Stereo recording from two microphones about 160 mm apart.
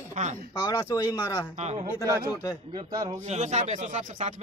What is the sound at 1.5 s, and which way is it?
Speech, 45° right (ahead or behind).